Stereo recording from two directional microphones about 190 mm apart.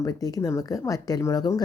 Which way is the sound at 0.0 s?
20° left (ahead or behind).